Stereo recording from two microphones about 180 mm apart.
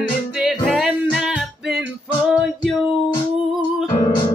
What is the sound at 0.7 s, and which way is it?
Music, centre (ahead or behind).